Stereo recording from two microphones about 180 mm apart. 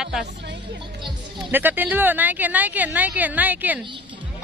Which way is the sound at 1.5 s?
10° right (ahead or behind).